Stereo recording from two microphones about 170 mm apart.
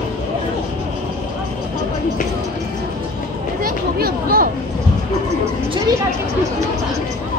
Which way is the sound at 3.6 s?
60° right (ahead or behind).